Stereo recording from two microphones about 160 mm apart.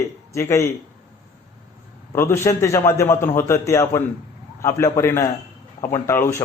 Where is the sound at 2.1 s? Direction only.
15° left (ahead or behind).